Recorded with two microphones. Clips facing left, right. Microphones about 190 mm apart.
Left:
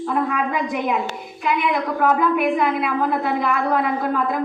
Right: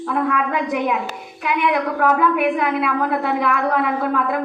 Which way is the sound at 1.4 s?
65° right (ahead or behind).